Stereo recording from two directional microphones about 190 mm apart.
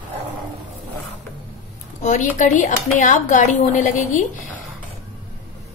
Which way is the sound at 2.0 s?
40° left (ahead or behind).